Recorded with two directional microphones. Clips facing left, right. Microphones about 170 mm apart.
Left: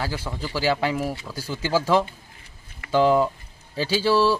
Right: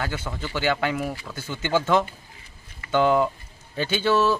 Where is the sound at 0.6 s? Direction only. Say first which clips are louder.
Left 1 dB; 35° left (ahead or behind).